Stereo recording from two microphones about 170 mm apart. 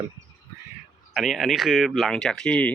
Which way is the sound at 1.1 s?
Centre (ahead or behind).